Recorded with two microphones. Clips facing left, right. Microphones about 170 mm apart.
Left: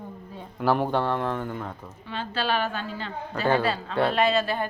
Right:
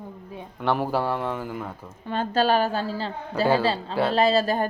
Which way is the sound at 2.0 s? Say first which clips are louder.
Right 7 dB; 45° right (ahead or behind).